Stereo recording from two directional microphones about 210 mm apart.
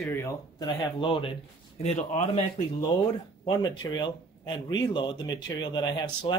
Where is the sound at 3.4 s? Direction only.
20° left (ahead or behind).